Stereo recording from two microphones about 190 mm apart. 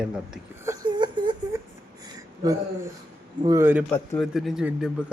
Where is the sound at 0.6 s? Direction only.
15° right (ahead or behind).